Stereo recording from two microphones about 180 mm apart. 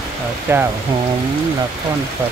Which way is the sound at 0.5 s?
15° right (ahead or behind).